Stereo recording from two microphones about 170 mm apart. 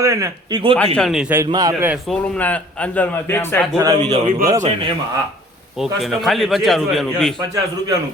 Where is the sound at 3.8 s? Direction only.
20° right (ahead or behind).